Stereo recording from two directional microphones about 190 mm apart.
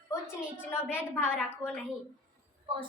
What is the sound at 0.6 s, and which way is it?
Speech, 10° left (ahead or behind).